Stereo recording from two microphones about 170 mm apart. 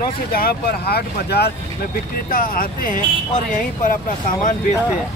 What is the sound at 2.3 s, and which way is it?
Speech, 55° left (ahead or behind).